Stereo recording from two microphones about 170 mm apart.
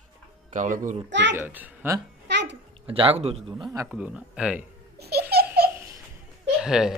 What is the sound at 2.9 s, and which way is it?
Speech, 35° right (ahead or behind).